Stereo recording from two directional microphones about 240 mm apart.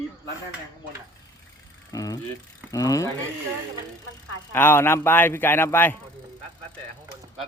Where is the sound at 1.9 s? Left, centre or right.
Centre.